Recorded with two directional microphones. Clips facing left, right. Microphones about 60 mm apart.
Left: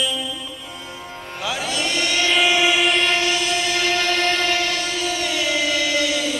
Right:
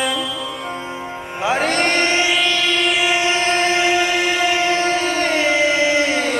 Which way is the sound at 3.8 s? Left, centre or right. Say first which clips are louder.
Right 4 dB; centre.